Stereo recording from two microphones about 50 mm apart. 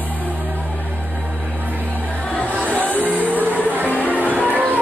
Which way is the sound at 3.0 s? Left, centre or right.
Right.